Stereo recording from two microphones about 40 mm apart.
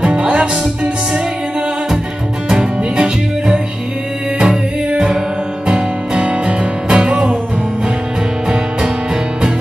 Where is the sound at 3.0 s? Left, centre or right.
Right.